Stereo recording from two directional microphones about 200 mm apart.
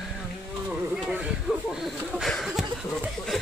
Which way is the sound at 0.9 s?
5° right (ahead or behind).